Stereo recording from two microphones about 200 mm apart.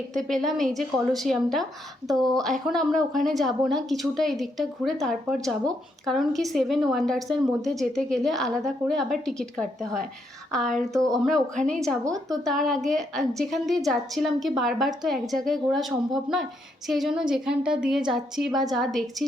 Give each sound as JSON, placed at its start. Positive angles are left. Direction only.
{"t": 0.1, "sound": "a woman's voice", "side_deg": 0}
{"t": 12.0, "sound": "a woman's voice", "side_deg": -15}
{"t": 12.6, "sound": "a woman's voice", "side_deg": 0}